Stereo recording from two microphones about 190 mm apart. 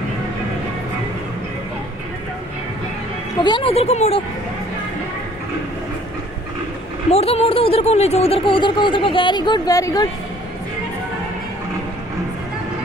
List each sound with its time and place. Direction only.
3.3 s speech: 25° left (ahead or behind)
7.1 s speech: 30° left (ahead or behind)